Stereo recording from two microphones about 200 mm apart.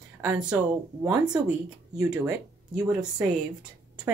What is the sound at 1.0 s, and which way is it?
Speech, 15° right (ahead or behind).